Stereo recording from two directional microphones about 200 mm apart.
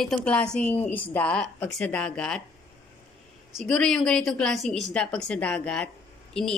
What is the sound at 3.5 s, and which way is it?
A woman's voice, centre (ahead or behind).